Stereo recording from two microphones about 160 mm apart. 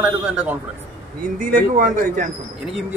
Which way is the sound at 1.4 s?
60° right (ahead or behind).